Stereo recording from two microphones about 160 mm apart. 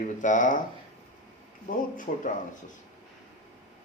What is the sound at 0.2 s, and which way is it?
Speech, 50° left (ahead or behind).